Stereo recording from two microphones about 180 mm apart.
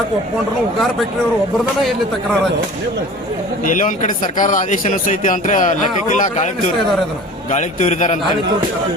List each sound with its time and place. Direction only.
3.7 s a man's voice: 45° left (ahead or behind)
7.5 s a man's voice: 40° left (ahead or behind)